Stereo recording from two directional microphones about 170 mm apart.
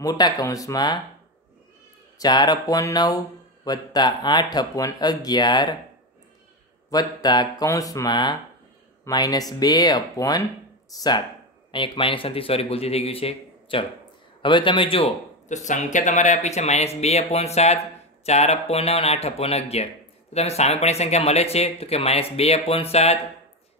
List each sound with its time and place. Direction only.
0.0 s speech: 20° left (ahead or behind)
2.1 s speech: 25° left (ahead or behind)
6.9 s speech: 25° left (ahead or behind)
15.4 s speech: 45° left (ahead or behind)